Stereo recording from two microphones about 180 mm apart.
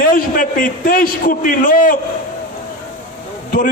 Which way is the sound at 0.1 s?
50° left (ahead or behind).